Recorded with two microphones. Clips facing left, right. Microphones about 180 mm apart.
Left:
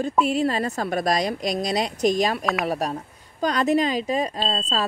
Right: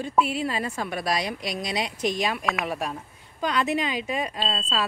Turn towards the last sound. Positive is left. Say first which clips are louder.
# left 3 dB
turn(degrees=40)  # may be behind; listen again after turning